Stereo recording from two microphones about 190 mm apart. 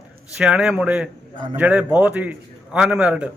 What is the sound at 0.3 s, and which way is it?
A man's voice, 5° right (ahead or behind).